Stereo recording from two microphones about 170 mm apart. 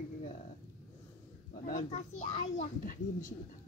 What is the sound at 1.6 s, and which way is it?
A child's voice, 45° left (ahead or behind).